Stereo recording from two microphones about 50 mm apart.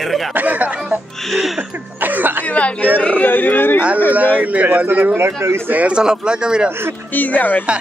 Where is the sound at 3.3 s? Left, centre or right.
Left.